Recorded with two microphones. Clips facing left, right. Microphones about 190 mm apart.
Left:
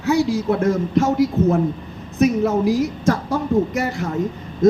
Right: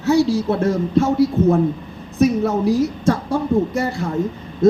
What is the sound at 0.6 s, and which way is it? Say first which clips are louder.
Speech: right 1 dB; 30° right (ahead or behind).